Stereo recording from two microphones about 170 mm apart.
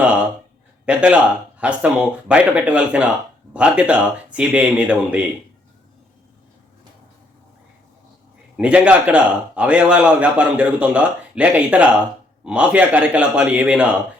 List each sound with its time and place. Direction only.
0.9 s a man's voice: 5° right (ahead or behind)
8.5 s a man's voice: 5° right (ahead or behind)